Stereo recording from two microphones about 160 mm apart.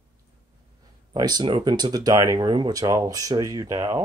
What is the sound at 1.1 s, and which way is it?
Speech, 25° right (ahead or behind).